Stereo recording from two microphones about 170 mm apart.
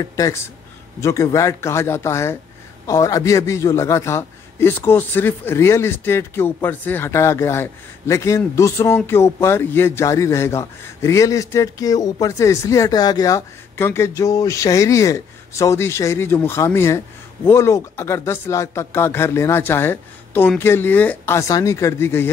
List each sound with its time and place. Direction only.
0.0 s a man's voice: 20° left (ahead or behind)